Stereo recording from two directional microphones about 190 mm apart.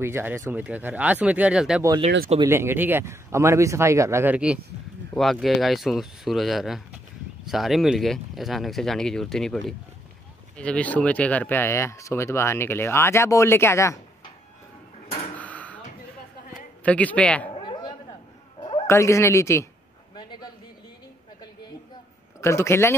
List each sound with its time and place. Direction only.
0.0 s speech: 10° right (ahead or behind); by 13.9 s 15° left (ahead or behind)
15.3 s a sound: 5° left (ahead or behind)
16.8 s speech: 5° left (ahead or behind)
17.6 s chatter: 25° left (ahead or behind)
18.9 s speech: 15° left (ahead or behind)
20.2 s a sound: 25° left (ahead or behind)
22.4 s speech: 15° left (ahead or behind)